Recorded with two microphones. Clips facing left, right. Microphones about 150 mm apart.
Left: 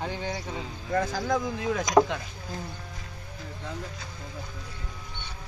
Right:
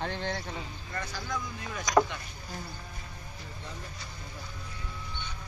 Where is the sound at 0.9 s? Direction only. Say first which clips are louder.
Left 10 dB; 90° left.